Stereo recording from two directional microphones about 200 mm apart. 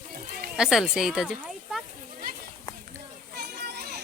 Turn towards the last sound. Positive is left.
turn(degrees=-50)  # may be behind; listen again after turning